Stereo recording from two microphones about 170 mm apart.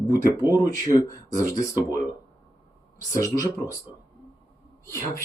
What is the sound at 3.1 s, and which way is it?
Speech, 20° left (ahead or behind).